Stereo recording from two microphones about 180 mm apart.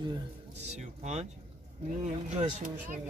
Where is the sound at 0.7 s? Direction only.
40° right (ahead or behind).